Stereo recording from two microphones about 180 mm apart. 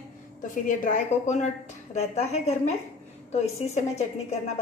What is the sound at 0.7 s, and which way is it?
A woman's voice, 45° left (ahead or behind).